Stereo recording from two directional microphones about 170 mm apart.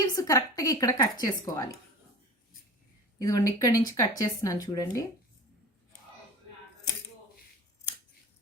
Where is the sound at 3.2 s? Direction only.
20° left (ahead or behind).